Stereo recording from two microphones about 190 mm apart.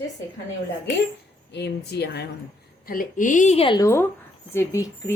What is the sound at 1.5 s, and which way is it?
Speech, 60° left (ahead or behind).